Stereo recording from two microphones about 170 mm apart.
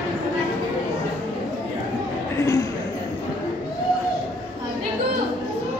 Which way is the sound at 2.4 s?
15° left (ahead or behind).